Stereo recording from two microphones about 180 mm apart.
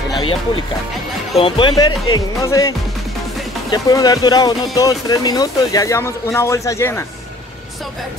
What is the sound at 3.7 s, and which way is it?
Speech, 20° left (ahead or behind).